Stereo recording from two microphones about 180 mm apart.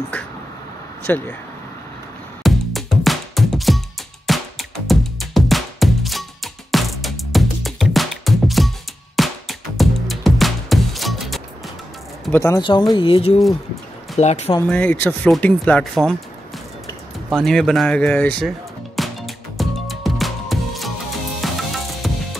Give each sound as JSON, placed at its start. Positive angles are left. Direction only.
{"t": 0.1, "sound": "a sound", "side_deg": 10}
{"t": 1.0, "sound": "speech", "side_deg": 10}
{"t": 2.4, "sound": "music", "side_deg": 0}
{"t": 12.3, "sound": "speech", "side_deg": 15}
{"t": 12.9, "sound": "speech", "side_deg": 30}
{"t": 14.7, "sound": "speech", "side_deg": 10}
{"t": 18.9, "sound": "music", "side_deg": 0}